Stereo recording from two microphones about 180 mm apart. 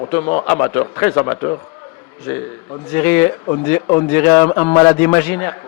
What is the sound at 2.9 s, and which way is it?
A man's voice, 10° left (ahead or behind).